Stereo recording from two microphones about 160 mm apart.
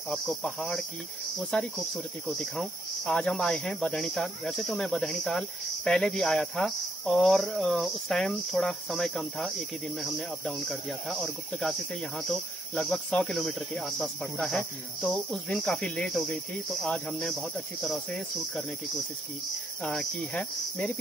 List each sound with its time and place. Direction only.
0.1 s cricket: centre (ahead or behind)
19.8 s cricket: 5° left (ahead or behind)